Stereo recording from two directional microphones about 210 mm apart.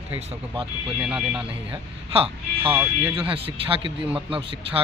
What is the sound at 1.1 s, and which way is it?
Speech, 5° right (ahead or behind).